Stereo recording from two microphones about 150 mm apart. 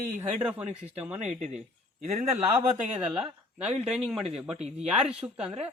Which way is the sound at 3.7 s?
Centre (ahead or behind).